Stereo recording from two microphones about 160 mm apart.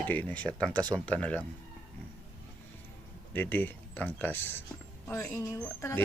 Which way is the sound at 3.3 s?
10° left (ahead or behind).